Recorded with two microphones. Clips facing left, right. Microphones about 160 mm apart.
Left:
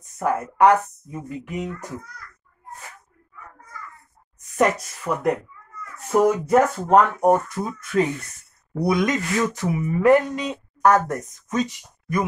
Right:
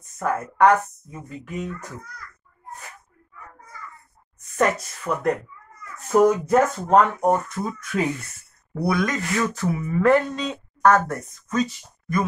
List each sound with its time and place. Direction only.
0.2 s speech: 10° left (ahead or behind)
4.6 s speech: 15° left (ahead or behind)